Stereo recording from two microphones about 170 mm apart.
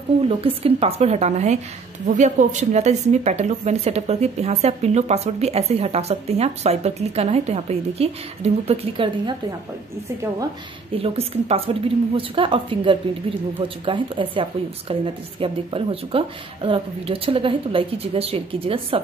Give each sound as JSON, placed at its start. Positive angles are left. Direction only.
{"t": 0.4, "sound": "a woman's voice", "side_deg": -35}
{"t": 11.0, "sound": "a woman's voice", "side_deg": -35}